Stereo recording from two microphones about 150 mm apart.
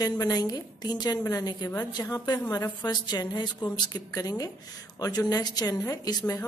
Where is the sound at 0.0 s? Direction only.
25° left (ahead or behind).